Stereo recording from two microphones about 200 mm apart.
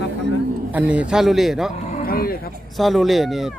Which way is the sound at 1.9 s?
45° left (ahead or behind).